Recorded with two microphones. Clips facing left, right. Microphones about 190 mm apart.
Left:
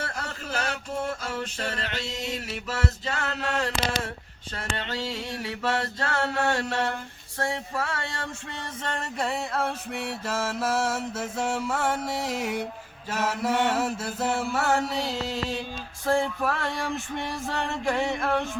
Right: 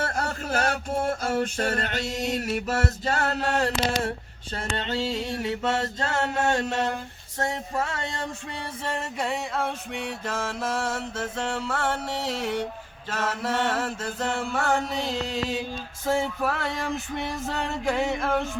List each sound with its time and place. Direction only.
0.0 s music: 50° right (ahead or behind)
4.5 s mantra: 30° right (ahead or behind)
8.8 s music: 5° right (ahead or behind)
16.0 s male singing: centre (ahead or behind)